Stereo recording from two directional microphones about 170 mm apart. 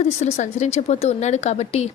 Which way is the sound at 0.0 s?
45° left (ahead or behind).